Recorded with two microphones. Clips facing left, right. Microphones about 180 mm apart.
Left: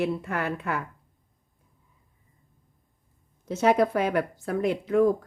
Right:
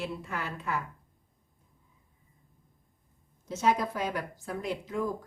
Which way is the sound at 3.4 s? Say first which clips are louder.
Left 6 dB; 65° left (ahead or behind).